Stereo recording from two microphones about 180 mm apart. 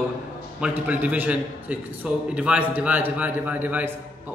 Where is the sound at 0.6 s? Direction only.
10° right (ahead or behind).